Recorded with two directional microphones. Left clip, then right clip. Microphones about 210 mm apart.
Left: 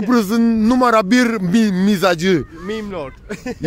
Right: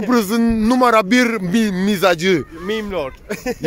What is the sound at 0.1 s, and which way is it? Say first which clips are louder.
Speech: left 1 dB; 10° left (ahead or behind).